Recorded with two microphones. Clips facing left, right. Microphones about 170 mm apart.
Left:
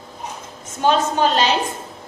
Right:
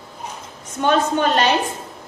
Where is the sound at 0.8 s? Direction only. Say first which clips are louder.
Even; 60° right (ahead or behind).